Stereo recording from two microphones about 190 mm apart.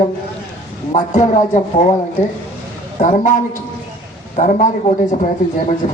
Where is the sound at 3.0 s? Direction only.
40° left (ahead or behind).